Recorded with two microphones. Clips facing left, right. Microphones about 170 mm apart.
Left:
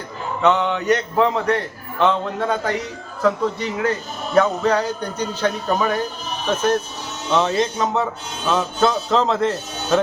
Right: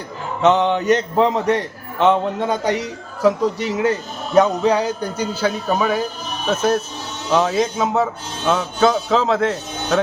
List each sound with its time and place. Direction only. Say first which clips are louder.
0.4 s a man's voice: right 3 dB; 20° right (ahead or behind); by 10.0 s centre (ahead or behind)